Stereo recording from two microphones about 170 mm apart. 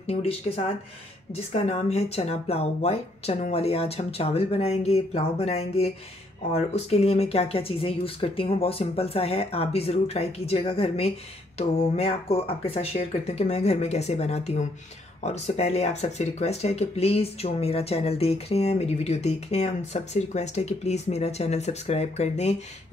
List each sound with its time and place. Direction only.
0.0 s speech: 35° left (ahead or behind)